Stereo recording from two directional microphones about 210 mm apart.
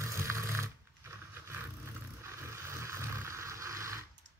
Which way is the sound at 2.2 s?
15° right (ahead or behind).